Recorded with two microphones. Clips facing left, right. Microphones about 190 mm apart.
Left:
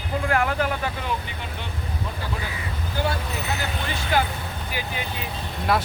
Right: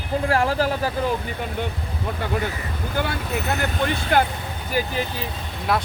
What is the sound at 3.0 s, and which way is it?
Speech, 60° right (ahead or behind).